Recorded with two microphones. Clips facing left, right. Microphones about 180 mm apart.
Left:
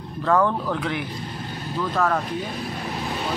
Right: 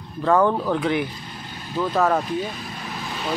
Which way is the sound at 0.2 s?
10° right (ahead or behind).